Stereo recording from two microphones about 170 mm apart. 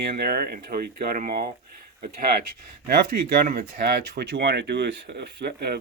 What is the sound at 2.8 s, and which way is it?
Speech, 70° right (ahead or behind).